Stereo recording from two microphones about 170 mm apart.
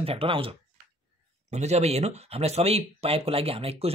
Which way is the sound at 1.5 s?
40° right (ahead or behind).